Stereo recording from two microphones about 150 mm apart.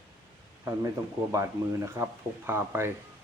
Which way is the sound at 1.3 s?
20° right (ahead or behind).